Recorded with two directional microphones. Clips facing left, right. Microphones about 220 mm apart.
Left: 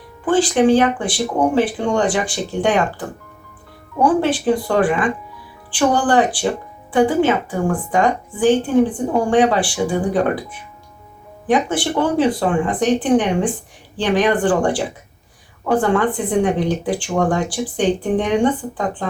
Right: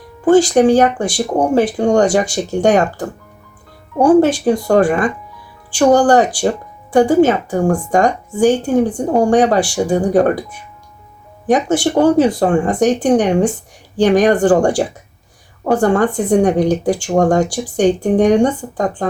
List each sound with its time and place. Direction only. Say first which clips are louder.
0.3 s speech: right 4 dB; 45° right (ahead or behind)
11.4 s speech: right 4 dB; 45° right (ahead or behind)